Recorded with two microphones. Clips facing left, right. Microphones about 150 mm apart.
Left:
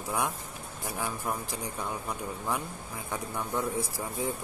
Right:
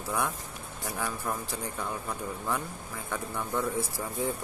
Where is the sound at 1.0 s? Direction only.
15° left (ahead or behind).